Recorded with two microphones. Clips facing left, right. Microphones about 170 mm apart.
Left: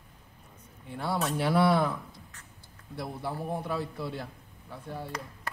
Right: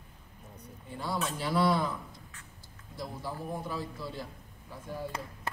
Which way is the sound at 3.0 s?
60° left (ahead or behind).